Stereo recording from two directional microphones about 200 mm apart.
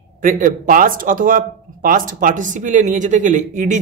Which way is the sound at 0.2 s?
40° right (ahead or behind).